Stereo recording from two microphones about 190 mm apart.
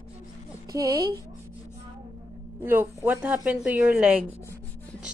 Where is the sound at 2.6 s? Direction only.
15° right (ahead or behind).